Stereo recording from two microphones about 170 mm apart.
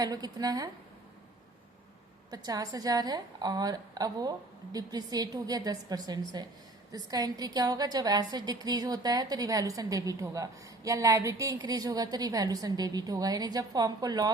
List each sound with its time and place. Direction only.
0.0 s a woman's voice: 25° right (ahead or behind)
2.3 s a woman's voice: 20° right (ahead or behind)